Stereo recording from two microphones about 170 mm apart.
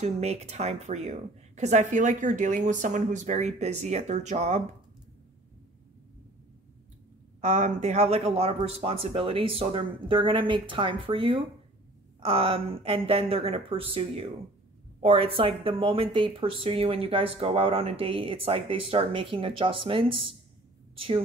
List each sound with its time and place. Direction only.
0.0 s a woman's voice: 40° right (ahead or behind)
7.4 s speech: 45° right (ahead or behind)